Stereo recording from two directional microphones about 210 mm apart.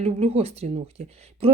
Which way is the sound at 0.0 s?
30° right (ahead or behind).